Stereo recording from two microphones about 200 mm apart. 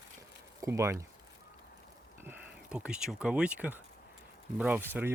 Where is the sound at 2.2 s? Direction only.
5° right (ahead or behind).